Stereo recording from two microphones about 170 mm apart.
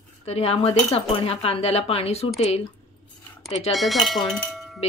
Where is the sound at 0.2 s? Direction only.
35° left (ahead or behind).